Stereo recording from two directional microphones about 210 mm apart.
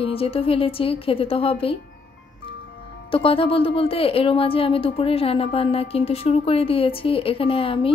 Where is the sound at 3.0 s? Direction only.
25° left (ahead or behind).